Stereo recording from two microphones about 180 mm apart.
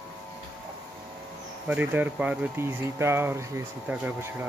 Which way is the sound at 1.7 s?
10° right (ahead or behind).